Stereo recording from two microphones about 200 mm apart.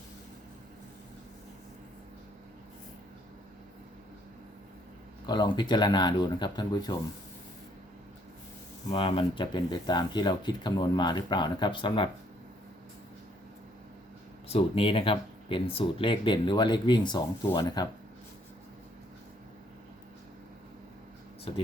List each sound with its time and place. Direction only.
5.2 s speech: 20° left (ahead or behind)
8.9 s speech: 25° left (ahead or behind)
14.4 s speech: 30° left (ahead or behind)
21.5 s speech: 25° left (ahead or behind)